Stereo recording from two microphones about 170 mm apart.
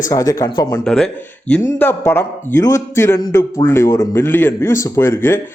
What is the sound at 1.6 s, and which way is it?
A man's voice, 15° left (ahead or behind).